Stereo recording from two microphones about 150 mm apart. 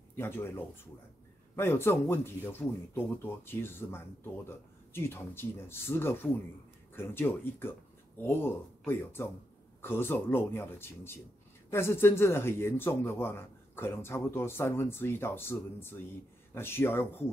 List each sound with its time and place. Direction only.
0.1 s speech: 15° left (ahead or behind)
1.6 s speech: 15° left (ahead or behind)